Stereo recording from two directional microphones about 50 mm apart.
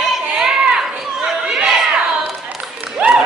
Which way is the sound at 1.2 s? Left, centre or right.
Centre.